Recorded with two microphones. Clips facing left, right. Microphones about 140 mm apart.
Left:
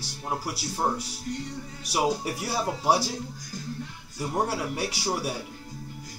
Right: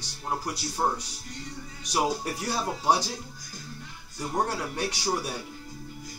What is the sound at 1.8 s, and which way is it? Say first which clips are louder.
Speech: left 1 dB; 5° left (ahead or behind).